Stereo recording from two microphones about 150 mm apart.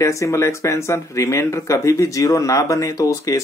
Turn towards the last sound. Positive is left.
turn(degrees=20)  # may be behind; listen again after turning